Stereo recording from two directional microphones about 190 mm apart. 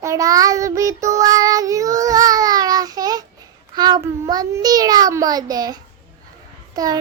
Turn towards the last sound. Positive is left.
turn(degrees=-20)  # may be behind; listen again after turning